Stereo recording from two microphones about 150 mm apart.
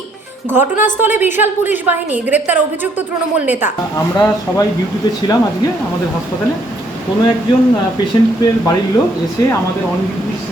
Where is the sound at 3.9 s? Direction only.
20° left (ahead or behind).